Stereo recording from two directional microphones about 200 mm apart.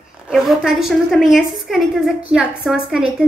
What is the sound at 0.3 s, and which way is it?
Speech, centre (ahead or behind).